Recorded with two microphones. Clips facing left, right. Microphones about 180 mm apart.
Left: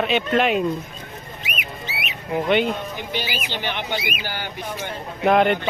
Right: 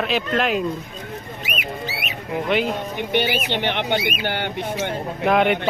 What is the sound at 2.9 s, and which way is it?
Speech, 60° right (ahead or behind).